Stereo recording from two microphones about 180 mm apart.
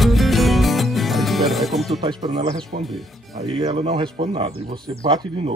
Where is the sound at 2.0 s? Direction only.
25° right (ahead or behind).